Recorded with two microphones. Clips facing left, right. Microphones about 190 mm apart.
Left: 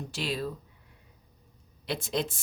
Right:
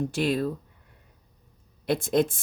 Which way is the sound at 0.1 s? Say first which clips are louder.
Right 7 dB; 50° right (ahead or behind).